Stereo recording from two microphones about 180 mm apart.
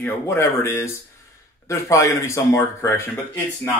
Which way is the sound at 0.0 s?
10° left (ahead or behind).